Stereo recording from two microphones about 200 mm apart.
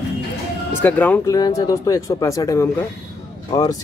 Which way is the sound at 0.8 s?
10° left (ahead or behind).